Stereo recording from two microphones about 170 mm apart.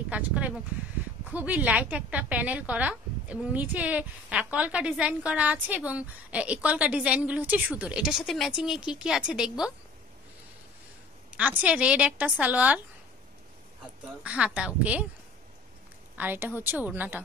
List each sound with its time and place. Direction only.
0.1 s a woman's voice: 10° right (ahead or behind)
11.2 s a woman's voice: 5° right (ahead or behind)
14.2 s a woman's voice: 5° right (ahead or behind)
16.2 s a woman's voice: 10° right (ahead or behind)